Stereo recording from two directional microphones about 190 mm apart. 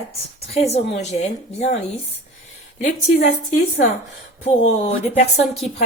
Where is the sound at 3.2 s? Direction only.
45° left (ahead or behind).